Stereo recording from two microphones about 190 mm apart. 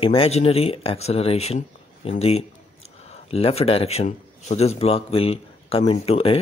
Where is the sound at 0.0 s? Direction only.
30° left (ahead or behind).